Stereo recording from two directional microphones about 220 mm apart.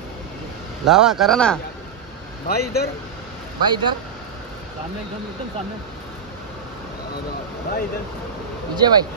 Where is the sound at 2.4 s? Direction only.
45° left (ahead or behind).